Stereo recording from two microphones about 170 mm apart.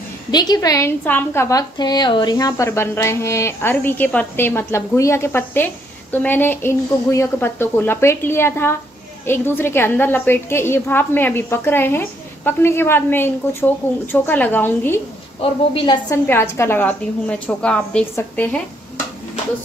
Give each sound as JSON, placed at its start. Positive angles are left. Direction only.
{"t": 0.3, "sound": "a woman's voice", "side_deg": 25}
{"t": 15.4, "sound": "a woman's voice", "side_deg": 30}
{"t": 16.3, "sound": "a woman's voice", "side_deg": 15}